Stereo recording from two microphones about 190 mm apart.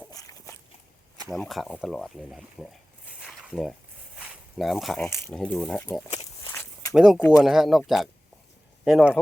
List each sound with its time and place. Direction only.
0.1 s walk: 15° left (ahead or behind)
1.3 s speech: centre (ahead or behind)
3.2 s a sound: 5° right (ahead or behind)
3.5 s speech: centre (ahead or behind)
4.2 s a sound: centre (ahead or behind)
5.0 s speech: 10° left (ahead or behind)
6.5 s walk: 10° left (ahead or behind)
6.9 s speech: centre (ahead or behind)